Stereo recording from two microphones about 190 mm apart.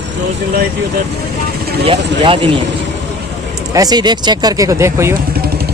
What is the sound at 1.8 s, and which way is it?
Speech, 30° right (ahead or behind).